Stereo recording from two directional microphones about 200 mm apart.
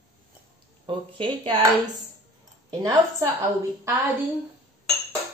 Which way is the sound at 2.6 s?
15° right (ahead or behind).